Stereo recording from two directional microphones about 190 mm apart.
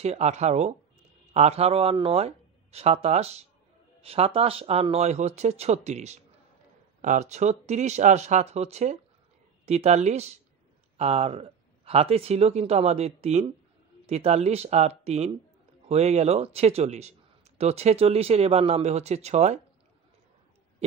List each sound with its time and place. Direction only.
0.0 s speech: 35° right (ahead or behind)